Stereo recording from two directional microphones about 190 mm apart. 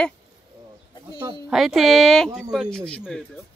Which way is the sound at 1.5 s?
Centre (ahead or behind).